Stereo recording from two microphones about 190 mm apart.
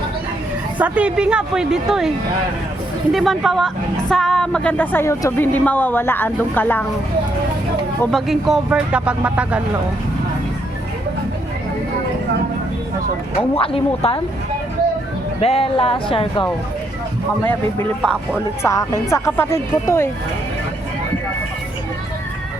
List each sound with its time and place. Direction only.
0.8 s a woman's voice: 5° right (ahead or behind); by 6.8 s 10° left (ahead or behind)
8.0 s speech: centre (ahead or behind)
13.6 s speech: 30° left (ahead or behind)
15.4 s speech: 30° left (ahead or behind)
17.4 s a woman's voice: 10° left (ahead or behind)